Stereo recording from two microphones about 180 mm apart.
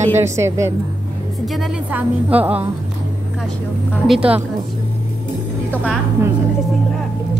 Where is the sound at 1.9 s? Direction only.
10° right (ahead or behind).